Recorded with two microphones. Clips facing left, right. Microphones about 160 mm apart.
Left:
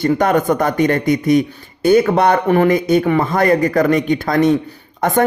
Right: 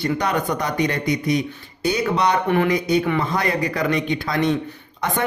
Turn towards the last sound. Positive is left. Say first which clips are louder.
# left 7 dB
turn(degrees=50)  # may be behind; listen again after turning